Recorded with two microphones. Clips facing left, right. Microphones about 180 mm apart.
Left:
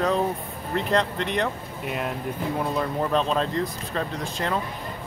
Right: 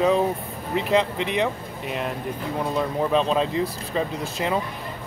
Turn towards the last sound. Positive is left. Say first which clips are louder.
# right 2 dB
turn(degrees=-5)  # may be behind; listen again after turning